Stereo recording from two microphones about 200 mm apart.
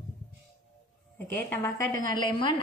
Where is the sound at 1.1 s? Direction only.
10° left (ahead or behind).